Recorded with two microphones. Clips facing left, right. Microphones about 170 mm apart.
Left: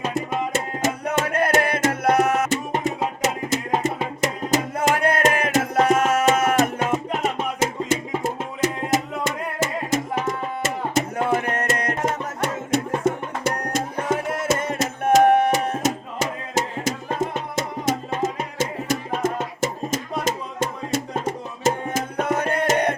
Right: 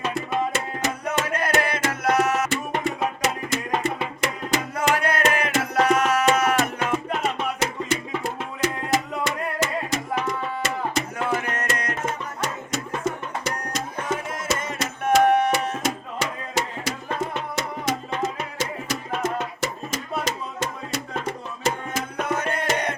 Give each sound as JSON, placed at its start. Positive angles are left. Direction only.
{"t": 0.0, "sound": "music", "side_deg": 45}